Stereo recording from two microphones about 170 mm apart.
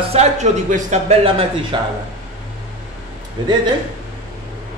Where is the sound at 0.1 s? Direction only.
40° right (ahead or behind).